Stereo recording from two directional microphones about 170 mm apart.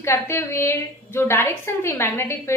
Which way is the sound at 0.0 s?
15° left (ahead or behind).